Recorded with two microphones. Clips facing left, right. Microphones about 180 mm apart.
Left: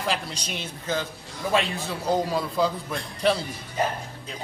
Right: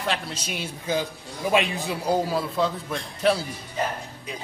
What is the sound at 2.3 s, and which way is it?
A man's voice, centre (ahead or behind).